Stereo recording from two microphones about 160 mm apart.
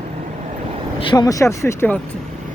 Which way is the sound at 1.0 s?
25° left (ahead or behind).